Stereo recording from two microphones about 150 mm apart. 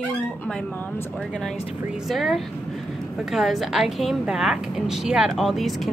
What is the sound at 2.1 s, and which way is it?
A woman's voice, centre (ahead or behind).